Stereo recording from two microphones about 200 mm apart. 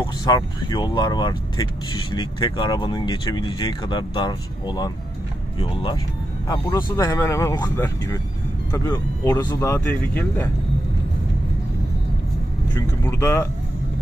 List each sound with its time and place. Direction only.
0.0 s speech: 20° left (ahead or behind)
12.7 s speech: 15° left (ahead or behind)